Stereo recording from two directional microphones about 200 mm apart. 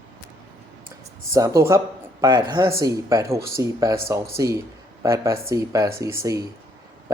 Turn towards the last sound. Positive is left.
turn(degrees=-15)  # may be behind; listen again after turning